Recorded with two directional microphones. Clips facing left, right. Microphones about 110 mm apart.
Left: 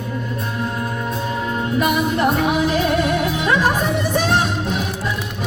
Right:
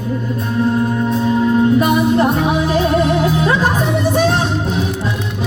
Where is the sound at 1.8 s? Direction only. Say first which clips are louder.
Right 4 dB; 35° right (ahead or behind).